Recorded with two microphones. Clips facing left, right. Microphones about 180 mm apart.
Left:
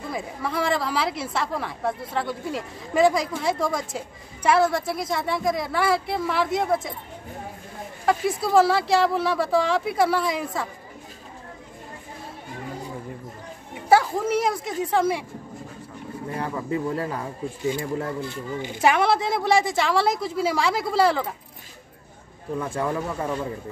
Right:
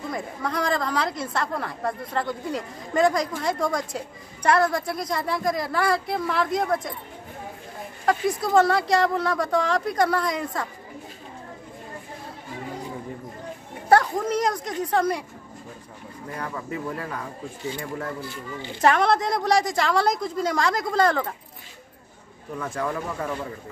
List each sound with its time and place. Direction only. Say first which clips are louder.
0.1 s a woman's voice: left 1 dB; 5° left (ahead or behind)
8.4 s a woman's voice: left 2 dB; 5° left (ahead or behind)
13.8 s a woman's voice: even; 5° left (ahead or behind)
16.3 s speech: left 4 dB; 30° left (ahead or behind)
18.6 s a woman's voice: even; 10° left (ahead or behind)
22.6 s speech: left 2 dB; 25° left (ahead or behind)